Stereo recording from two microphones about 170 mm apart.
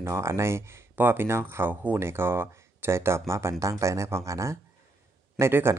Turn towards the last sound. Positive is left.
turn(degrees=-15)  # may be behind; listen again after turning